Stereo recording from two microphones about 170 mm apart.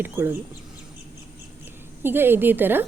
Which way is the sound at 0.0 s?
10° right (ahead or behind).